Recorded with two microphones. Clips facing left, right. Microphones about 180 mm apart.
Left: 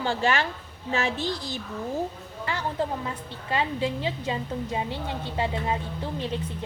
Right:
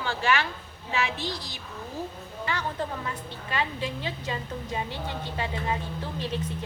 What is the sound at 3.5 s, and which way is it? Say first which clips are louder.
A woman's voice: left 4 dB; 25° left (ahead or behind).